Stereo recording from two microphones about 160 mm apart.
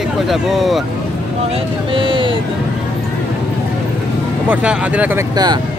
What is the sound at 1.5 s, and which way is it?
Speech, 30° right (ahead or behind).